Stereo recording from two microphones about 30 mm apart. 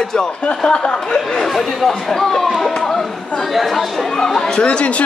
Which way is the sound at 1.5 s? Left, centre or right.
Centre.